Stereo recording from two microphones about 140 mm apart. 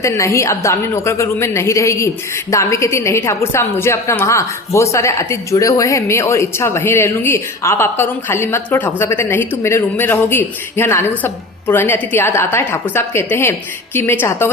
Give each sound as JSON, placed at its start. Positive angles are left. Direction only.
{"t": 0.0, "sound": "a woman's voice", "side_deg": 20}